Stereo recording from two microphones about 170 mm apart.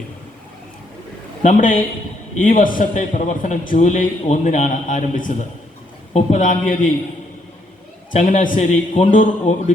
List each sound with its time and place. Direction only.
1.4 s a man's voice: 50° left (ahead or behind)
8.2 s a man's voice: 50° left (ahead or behind)